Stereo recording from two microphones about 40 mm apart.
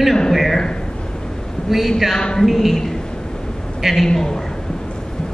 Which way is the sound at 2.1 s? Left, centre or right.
Centre.